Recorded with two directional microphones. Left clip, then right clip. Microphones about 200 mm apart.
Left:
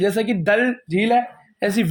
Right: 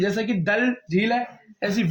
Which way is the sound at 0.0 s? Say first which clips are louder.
Left 4 dB; 45° left (ahead or behind).